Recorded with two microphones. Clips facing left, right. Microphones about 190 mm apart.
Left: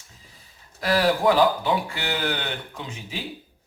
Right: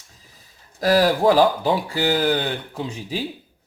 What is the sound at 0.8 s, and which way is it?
Speech, 40° right (ahead or behind).